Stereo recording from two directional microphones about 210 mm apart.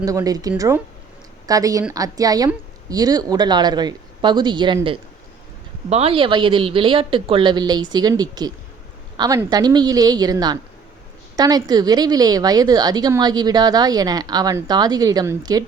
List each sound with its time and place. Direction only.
0.0 s a woman's voice: 15° right (ahead or behind)